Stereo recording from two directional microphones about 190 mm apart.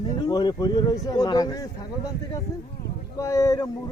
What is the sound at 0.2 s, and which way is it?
Speech, 20° left (ahead or behind).